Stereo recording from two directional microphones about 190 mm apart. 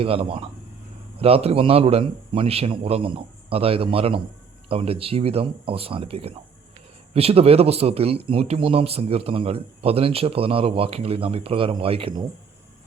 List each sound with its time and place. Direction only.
0.0 s speech: 30° right (ahead or behind)